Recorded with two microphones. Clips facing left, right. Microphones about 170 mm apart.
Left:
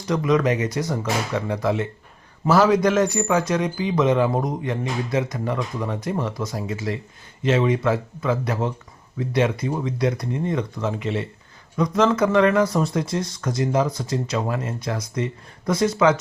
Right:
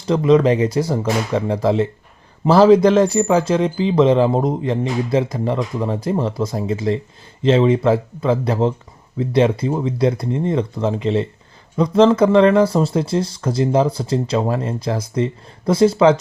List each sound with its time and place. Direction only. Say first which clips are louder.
0.1 s speech: right 6 dB; 30° right (ahead or behind)